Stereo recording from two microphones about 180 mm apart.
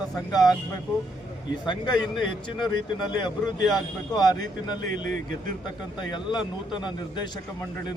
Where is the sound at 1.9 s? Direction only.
Centre (ahead or behind).